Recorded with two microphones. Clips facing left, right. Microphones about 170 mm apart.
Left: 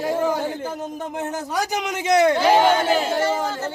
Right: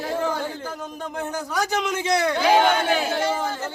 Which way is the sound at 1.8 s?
20° left (ahead or behind).